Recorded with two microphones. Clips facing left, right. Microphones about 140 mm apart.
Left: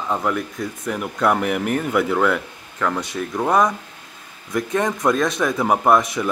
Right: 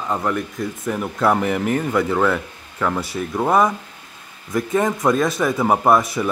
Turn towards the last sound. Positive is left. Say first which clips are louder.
# right 1 dB
turn(degrees=0)  # may be behind; listen again after turning